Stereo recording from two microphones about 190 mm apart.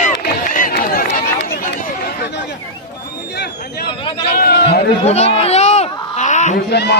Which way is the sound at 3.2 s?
60° left (ahead or behind).